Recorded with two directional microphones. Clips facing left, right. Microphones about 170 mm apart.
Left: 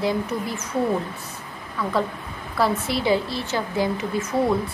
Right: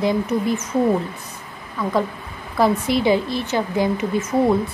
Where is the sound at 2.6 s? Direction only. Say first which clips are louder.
Right 5 dB; 20° right (ahead or behind).